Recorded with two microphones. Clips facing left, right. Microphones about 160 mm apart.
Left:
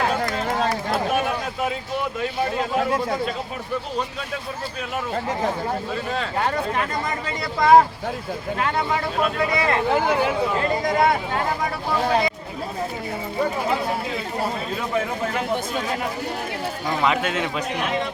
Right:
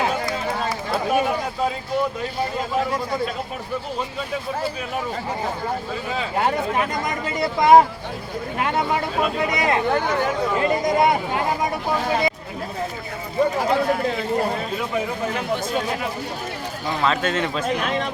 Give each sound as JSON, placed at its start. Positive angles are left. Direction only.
{"t": 7.3, "sound": "speech", "side_deg": -20}
{"t": 9.9, "sound": "a man's voice", "side_deg": 10}
{"t": 10.6, "sound": "speech", "side_deg": -20}
{"t": 17.0, "sound": "a man's voice", "side_deg": 10}